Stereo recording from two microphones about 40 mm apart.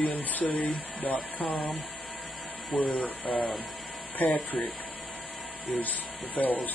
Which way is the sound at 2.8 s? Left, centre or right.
Left.